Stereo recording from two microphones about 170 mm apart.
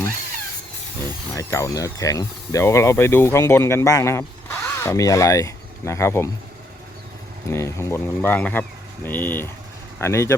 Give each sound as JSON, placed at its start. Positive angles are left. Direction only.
{"t": 1.4, "sound": "speech", "side_deg": 20}
{"t": 7.5, "sound": "speech", "side_deg": 15}